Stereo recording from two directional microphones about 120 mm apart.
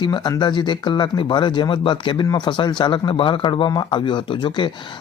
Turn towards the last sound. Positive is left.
turn(degrees=45)  # may be behind; listen again after turning